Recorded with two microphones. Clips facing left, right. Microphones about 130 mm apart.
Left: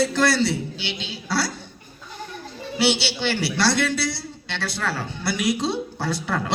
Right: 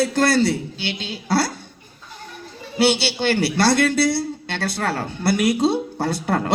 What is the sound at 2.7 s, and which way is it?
A man's voice, 50° right (ahead or behind).